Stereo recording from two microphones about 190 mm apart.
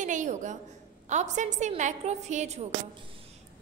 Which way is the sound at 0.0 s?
40° right (ahead or behind).